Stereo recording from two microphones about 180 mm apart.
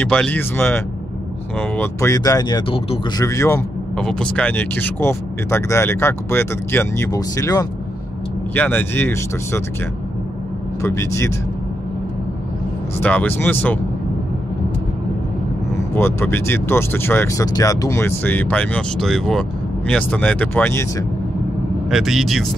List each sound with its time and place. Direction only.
0.0 s speech: 5° left (ahead or behind)
3.9 s speech: 5° left (ahead or behind)
10.8 s speech: 15° left (ahead or behind)
13.0 s speech: 10° left (ahead or behind)
15.9 s speech: 15° left (ahead or behind)
21.9 s speech: centre (ahead or behind)